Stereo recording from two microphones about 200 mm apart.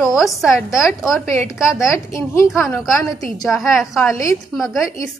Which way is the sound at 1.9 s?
15° left (ahead or behind).